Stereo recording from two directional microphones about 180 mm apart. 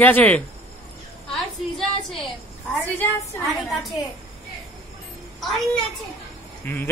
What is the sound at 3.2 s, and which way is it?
Speech, 15° left (ahead or behind).